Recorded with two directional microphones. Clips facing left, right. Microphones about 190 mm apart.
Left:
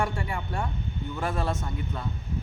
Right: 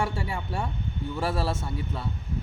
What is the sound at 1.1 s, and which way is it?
Speech, 30° right (ahead or behind).